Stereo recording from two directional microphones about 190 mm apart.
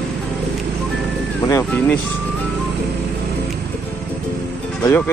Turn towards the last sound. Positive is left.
turn(degrees=10)  # may be behind; listen again after turning